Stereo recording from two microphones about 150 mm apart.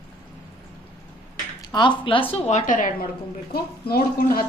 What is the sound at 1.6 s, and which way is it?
Speech, 30° left (ahead or behind).